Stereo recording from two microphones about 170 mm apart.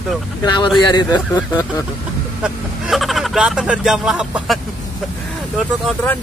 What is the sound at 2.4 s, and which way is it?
Speech, centre (ahead or behind).